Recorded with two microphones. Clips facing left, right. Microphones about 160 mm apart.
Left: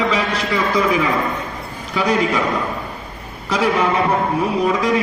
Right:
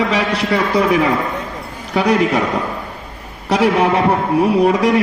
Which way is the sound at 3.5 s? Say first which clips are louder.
Right 4 dB; 65° right (ahead or behind).